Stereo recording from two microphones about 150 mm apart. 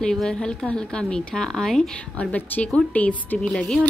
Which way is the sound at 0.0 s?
5° left (ahead or behind).